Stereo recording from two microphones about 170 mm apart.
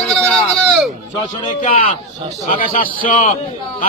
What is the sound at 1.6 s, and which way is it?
A man's voice, 50° left (ahead or behind).